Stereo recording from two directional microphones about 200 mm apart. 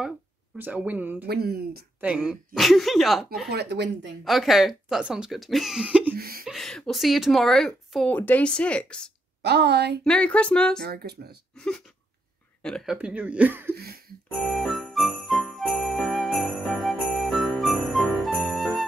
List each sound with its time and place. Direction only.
0.6 s speech: 10° right (ahead or behind)
1.2 s speech: 50° right (ahead or behind)
2.0 s speech: 5° right (ahead or behind)
3.4 s speech: 55° right (ahead or behind)
4.2 s speech: centre (ahead or behind)
6.1 s speech: 50° right (ahead or behind)
6.4 s speech: centre (ahead or behind)
9.4 s speech: 60° right (ahead or behind)
10.0 s speech: 5° left (ahead or behind)
10.8 s speech: 50° right (ahead or behind)
11.5 s speech: 5° left (ahead or behind)
12.9 s speech: 10° right (ahead or behind)
14.3 s jingle bell: centre (ahead or behind)